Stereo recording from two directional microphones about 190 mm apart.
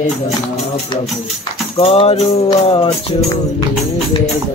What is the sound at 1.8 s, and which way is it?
Music, 30° left (ahead or behind).